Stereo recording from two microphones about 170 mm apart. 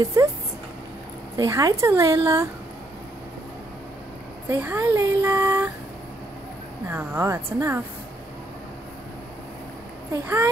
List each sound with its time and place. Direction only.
0.0 s speech: 20° right (ahead or behind)
1.3 s a woman's voice: 20° right (ahead or behind)
4.5 s speech: 10° right (ahead or behind)
6.9 s a woman's voice: 10° right (ahead or behind)
10.1 s a woman's voice: 15° right (ahead or behind)